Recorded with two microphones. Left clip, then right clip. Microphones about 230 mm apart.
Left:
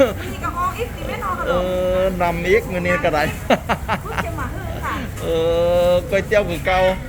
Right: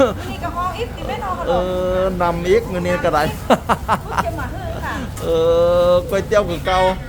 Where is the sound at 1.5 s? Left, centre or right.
Centre.